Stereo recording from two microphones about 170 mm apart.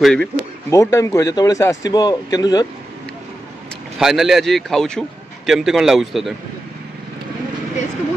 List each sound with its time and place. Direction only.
0.0 s a man's voice: 5° left (ahead or behind)
0.7 s a man's voice: 20° left (ahead or behind)
4.0 s a man's voice: centre (ahead or behind)